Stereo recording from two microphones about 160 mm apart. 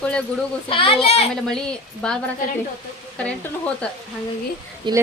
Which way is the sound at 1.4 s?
5° left (ahead or behind).